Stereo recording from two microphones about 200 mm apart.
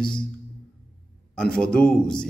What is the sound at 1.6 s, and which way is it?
Speech, 5° left (ahead or behind).